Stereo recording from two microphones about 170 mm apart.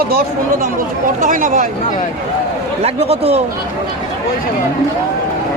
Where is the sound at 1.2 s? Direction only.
50° right (ahead or behind).